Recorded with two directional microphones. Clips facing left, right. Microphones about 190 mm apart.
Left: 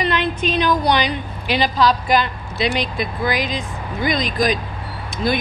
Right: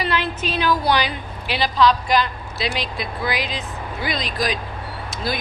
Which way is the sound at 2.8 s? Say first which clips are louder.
Left 4 dB; 50° left (ahead or behind).